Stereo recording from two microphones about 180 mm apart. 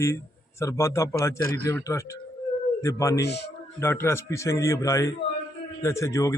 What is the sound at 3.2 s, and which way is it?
Speech, 65° left (ahead or behind).